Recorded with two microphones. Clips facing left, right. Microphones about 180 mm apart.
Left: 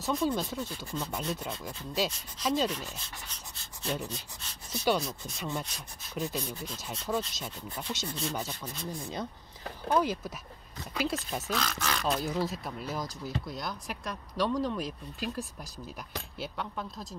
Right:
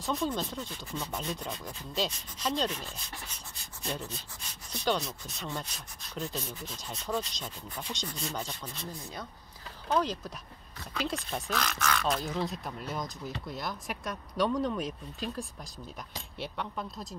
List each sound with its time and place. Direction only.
0.0 s speech: 5° left (ahead or behind)
4.7 s speech: 5° left (ahead or behind)
9.9 s speech: 10° left (ahead or behind)
11.8 s speech: 25° left (ahead or behind)
12.1 s speech: 5° left (ahead or behind)